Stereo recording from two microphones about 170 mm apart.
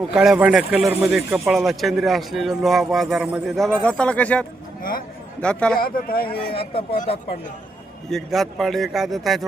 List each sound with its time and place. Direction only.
0.1 s speech: 5° right (ahead or behind)
4.8 s a man's voice: 55° left (ahead or behind)
5.4 s speech: 5° left (ahead or behind)
5.8 s a man's voice: 60° left (ahead or behind)
6.2 s a man's voice: 30° left (ahead or behind)
8.1 s speech: centre (ahead or behind)